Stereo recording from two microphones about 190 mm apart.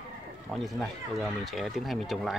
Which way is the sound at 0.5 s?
Centre (ahead or behind).